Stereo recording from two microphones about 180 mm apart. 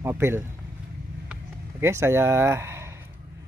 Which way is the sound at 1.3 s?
15° right (ahead or behind).